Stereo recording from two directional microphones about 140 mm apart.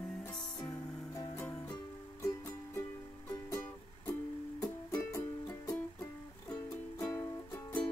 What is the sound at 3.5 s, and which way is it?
Music, 20° left (ahead or behind).